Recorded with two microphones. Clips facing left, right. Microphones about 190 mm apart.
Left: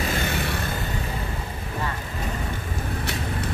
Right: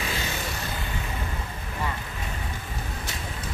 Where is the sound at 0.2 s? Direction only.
60° left (ahead or behind).